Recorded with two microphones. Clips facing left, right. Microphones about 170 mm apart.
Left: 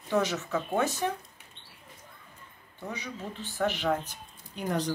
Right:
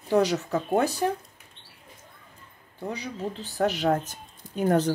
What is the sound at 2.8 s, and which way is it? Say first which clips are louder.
Speech: right 6 dB; 35° right (ahead or behind).